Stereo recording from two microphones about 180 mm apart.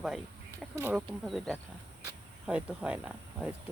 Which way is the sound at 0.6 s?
5° right (ahead or behind).